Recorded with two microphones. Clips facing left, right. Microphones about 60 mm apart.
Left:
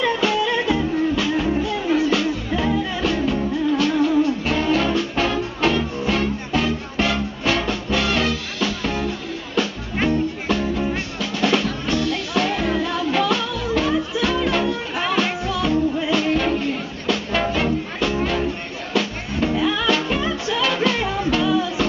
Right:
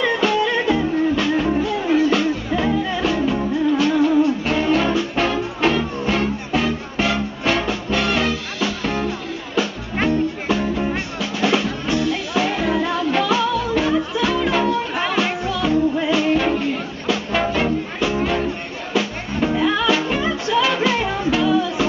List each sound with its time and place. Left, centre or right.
0.2 s music: centre